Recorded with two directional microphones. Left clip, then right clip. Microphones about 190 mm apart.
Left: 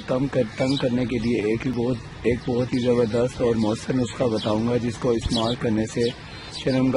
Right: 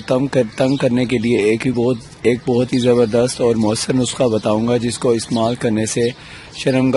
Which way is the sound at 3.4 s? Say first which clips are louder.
Right 6 dB; 40° right (ahead or behind).